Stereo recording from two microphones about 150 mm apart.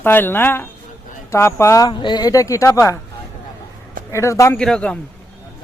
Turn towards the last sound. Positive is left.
turn(degrees=5)  # may be behind; listen again after turning